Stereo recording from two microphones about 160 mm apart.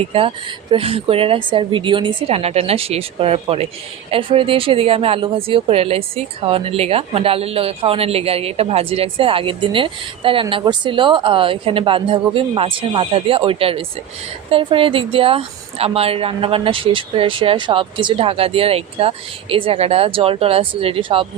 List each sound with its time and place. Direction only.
0.1 s a woman's voice: 35° right (ahead or behind)